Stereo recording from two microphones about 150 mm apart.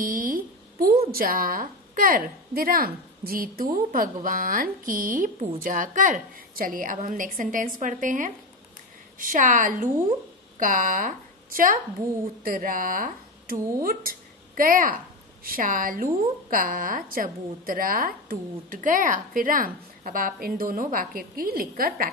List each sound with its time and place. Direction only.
0.0 s a sound: 70° right (ahead or behind)
1.1 s speech: 75° right (ahead or behind)
3.7 s a woman's voice: 65° right (ahead or behind)